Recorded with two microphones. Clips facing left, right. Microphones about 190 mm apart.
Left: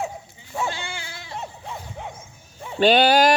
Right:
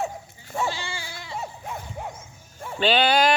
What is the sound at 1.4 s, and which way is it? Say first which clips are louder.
Dog: even; 10° right (ahead or behind).